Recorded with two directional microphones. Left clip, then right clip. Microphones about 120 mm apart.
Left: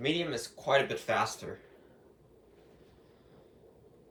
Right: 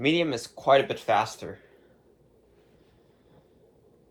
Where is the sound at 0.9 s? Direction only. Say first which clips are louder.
Right 6 dB; 5° right (ahead or behind).